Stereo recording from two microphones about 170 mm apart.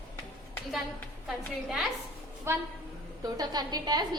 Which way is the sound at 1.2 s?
Centre (ahead or behind).